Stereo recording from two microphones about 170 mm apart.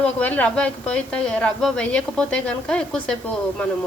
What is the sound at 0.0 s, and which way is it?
Speech, 10° left (ahead or behind).